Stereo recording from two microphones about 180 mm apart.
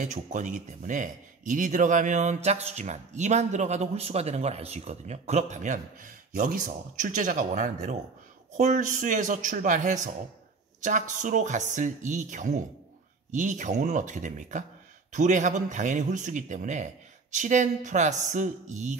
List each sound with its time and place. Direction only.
0.0 s a man's voice: 40° right (ahead or behind)